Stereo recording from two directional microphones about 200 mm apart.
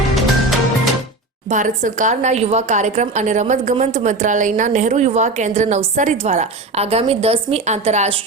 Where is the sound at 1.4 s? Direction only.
40° right (ahead or behind).